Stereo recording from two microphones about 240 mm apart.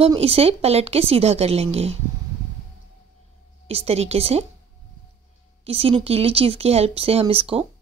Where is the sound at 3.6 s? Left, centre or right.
Right.